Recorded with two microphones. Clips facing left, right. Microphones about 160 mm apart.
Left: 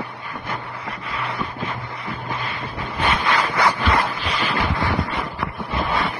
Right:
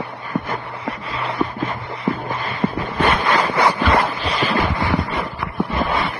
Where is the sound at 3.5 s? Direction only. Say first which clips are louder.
Right 3 dB; 20° right (ahead or behind).